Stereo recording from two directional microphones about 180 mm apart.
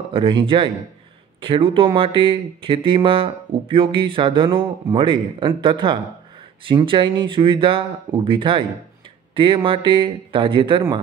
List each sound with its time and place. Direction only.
0.1 s speech: 25° right (ahead or behind)